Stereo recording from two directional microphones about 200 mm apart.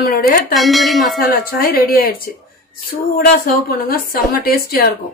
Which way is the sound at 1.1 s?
45° left (ahead or behind).